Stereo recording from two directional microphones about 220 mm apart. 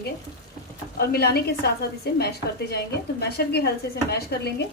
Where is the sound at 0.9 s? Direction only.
45° left (ahead or behind).